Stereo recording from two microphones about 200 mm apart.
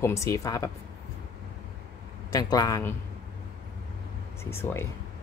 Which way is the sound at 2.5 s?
15° left (ahead or behind).